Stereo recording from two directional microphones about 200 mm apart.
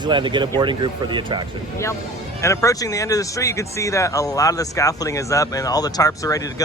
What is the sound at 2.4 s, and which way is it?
Speech, 15° left (ahead or behind).